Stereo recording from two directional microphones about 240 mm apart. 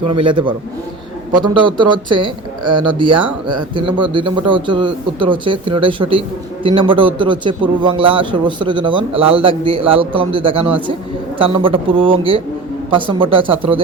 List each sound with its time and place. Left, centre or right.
0.1 s a man's voice: right